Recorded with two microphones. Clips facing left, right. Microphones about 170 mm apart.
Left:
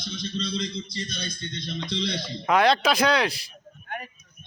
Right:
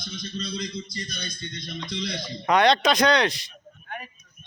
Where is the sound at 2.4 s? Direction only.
5° left (ahead or behind).